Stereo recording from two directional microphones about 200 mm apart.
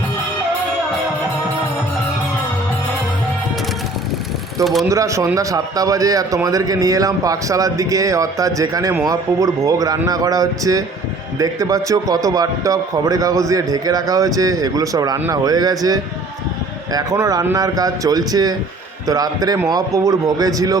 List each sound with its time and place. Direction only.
4.6 s speech: centre (ahead or behind)
4.9 s a man's voice: 15° right (ahead or behind)